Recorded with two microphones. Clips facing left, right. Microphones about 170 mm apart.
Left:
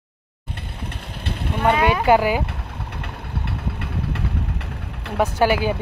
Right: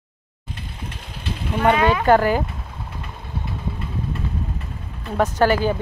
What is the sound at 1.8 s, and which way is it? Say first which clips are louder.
Speech: left 1 dB; 10° left (ahead or behind).